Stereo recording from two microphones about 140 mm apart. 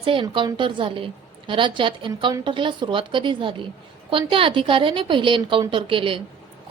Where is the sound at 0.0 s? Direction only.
40° right (ahead or behind).